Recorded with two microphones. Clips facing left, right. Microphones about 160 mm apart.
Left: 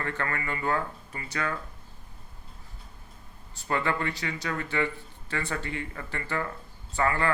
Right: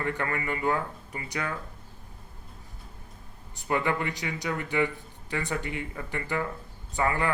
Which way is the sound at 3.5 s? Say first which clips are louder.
Right 1 dB; 15° right (ahead or behind).